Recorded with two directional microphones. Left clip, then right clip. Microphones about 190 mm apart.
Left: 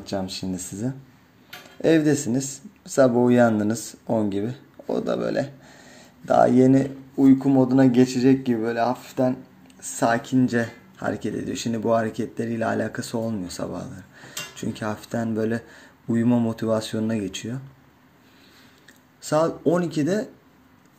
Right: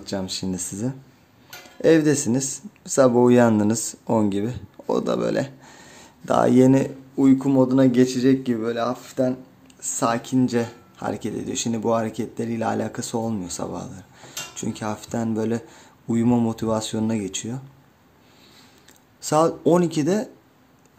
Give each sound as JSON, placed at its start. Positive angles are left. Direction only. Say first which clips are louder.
{"t": 0.0, "sound": "speech", "louder": "right 1 dB", "side_deg": -15}
{"t": 19.2, "sound": "speech", "louder": "right 2 dB", "side_deg": -20}